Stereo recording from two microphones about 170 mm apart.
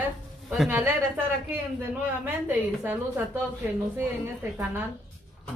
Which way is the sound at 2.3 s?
10° right (ahead or behind).